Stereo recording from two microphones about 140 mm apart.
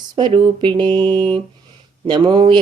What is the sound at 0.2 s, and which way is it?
Speech, 35° right (ahead or behind).